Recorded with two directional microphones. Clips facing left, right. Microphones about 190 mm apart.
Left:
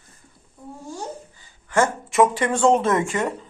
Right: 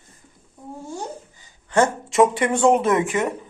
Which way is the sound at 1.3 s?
20° right (ahead or behind).